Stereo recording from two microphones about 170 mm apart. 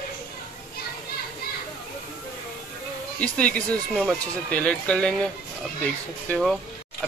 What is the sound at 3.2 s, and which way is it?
Speech, 5° left (ahead or behind).